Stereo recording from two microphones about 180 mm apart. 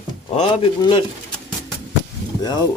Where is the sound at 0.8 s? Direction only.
25° left (ahead or behind).